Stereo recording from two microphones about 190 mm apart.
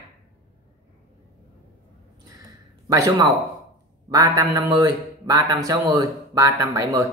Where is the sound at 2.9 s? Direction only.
15° right (ahead or behind).